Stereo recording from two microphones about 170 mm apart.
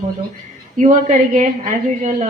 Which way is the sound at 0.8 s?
50° right (ahead or behind).